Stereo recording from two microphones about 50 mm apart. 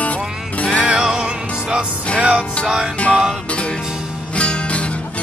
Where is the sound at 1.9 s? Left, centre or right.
Left.